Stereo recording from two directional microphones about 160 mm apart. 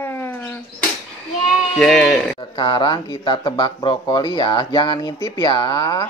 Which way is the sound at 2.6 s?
30° left (ahead or behind).